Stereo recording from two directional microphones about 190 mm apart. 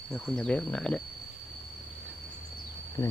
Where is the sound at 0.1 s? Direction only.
Centre (ahead or behind).